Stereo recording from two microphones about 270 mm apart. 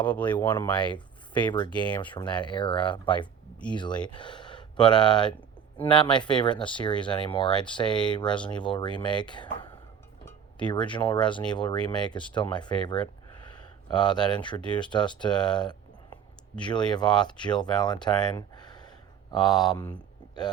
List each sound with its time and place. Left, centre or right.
0.0 s speech: centre